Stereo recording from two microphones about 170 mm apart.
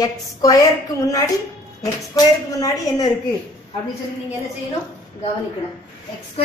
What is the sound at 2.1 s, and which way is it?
Speech, 20° left (ahead or behind).